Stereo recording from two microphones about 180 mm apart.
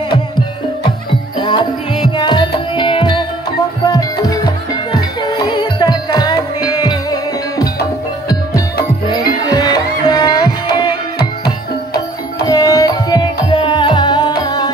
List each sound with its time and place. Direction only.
1.4 s music: 25° left (ahead or behind)
12.4 s music: 20° left (ahead or behind)